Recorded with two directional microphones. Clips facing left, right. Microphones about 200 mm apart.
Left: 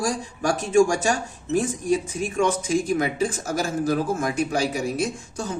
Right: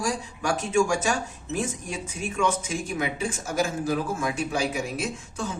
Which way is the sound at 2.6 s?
40° left (ahead or behind).